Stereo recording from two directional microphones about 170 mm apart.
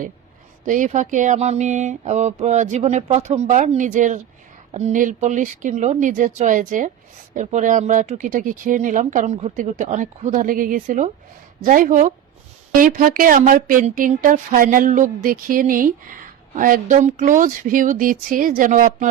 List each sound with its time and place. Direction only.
0.6 s speech: 45° right (ahead or behind)